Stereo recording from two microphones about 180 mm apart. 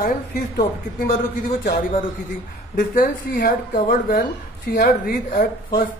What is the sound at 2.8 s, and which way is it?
A woman's voice, 55° left (ahead or behind).